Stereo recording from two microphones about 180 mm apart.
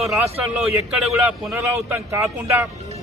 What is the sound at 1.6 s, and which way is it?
A man's voice, 15° right (ahead or behind).